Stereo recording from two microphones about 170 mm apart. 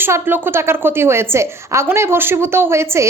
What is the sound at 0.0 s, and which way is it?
A woman's voice, 10° right (ahead or behind).